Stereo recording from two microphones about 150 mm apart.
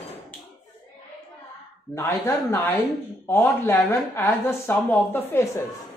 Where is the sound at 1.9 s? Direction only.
15° left (ahead or behind).